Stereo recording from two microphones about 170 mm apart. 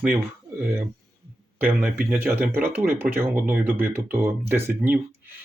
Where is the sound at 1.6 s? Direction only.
10° right (ahead or behind).